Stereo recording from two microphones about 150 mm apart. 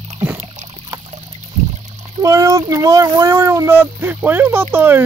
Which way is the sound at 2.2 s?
20° right (ahead or behind).